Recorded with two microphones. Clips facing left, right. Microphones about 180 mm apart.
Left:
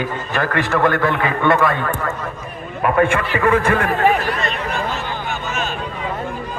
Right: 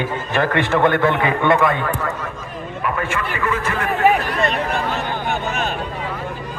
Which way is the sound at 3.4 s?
55° left (ahead or behind).